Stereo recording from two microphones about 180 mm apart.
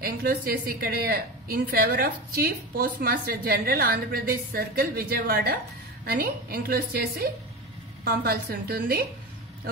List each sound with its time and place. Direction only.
0.0 s speech: 55° right (ahead or behind)